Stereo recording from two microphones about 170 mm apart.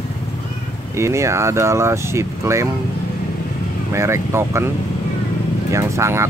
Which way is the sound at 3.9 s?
15° right (ahead or behind).